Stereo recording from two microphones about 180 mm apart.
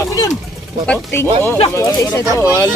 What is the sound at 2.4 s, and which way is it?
Speech, 15° left (ahead or behind).